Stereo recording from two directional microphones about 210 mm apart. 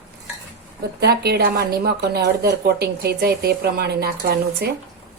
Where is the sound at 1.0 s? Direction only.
50° right (ahead or behind).